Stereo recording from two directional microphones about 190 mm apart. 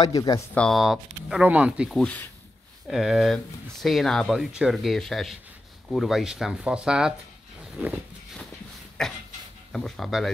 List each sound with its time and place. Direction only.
0.0 s speech: 20° left (ahead or behind)
0.6 s speech: centre (ahead or behind)
9.0 s speech: centre (ahead or behind)